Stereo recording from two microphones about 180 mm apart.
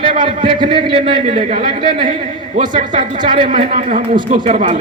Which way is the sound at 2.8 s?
45° right (ahead or behind).